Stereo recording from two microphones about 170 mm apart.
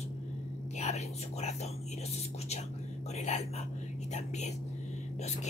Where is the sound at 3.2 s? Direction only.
45° left (ahead or behind).